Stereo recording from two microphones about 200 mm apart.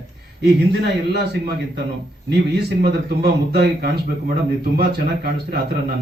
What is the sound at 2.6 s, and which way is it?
Speech, 55° right (ahead or behind).